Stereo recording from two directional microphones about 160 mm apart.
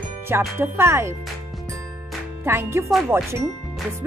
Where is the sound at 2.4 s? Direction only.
15° right (ahead or behind).